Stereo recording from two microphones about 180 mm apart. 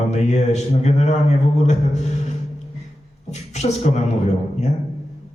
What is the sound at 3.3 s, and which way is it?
A man's voice, 40° left (ahead or behind).